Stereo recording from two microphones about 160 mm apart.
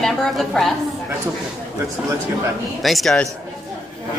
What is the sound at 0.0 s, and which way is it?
Speech, 5° left (ahead or behind).